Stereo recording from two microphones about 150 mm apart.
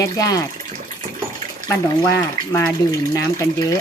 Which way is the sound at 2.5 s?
20° left (ahead or behind).